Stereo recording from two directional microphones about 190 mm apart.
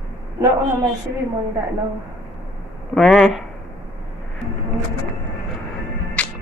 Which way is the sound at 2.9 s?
Centre (ahead or behind).